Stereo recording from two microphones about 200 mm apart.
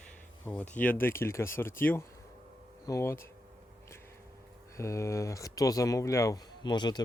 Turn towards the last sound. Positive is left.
turn(degrees=20)  # may be behind; listen again after turning